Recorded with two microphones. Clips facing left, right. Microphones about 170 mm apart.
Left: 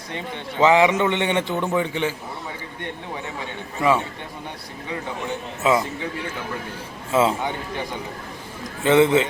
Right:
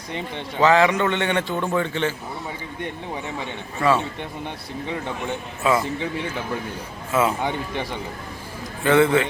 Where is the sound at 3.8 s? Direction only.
20° left (ahead or behind).